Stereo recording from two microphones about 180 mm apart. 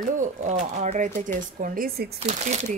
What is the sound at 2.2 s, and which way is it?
Speech, 35° right (ahead or behind).